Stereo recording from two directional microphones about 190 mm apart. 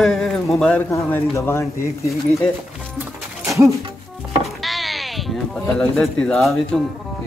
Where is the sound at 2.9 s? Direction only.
15° right (ahead or behind).